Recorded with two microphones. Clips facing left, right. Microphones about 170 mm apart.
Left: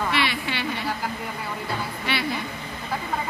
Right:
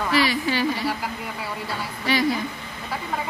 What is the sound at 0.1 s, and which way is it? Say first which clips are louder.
Speech: right 4 dB; 40° right (ahead or behind).